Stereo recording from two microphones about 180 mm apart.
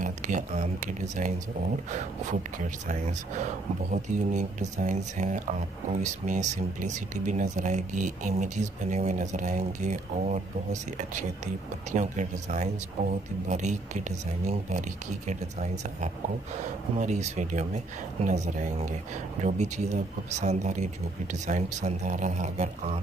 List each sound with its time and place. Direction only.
0.0 s speech: 45° right (ahead or behind)
2.9 s speech: 40° right (ahead or behind)